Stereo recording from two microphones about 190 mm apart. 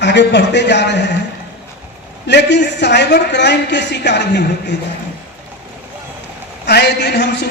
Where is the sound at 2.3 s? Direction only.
65° left (ahead or behind).